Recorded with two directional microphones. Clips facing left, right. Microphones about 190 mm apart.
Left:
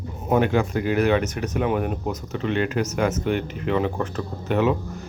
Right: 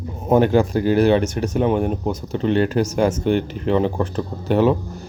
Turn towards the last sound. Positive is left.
turn(degrees=-35)  # may be behind; listen again after turning